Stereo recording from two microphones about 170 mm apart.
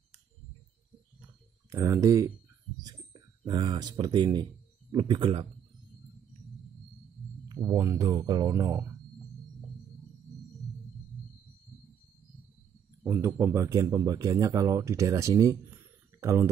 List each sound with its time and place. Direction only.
1.7 s speech: 20° right (ahead or behind)
7.4 s speech: 20° right (ahead or behind)
13.0 s speech: 15° right (ahead or behind)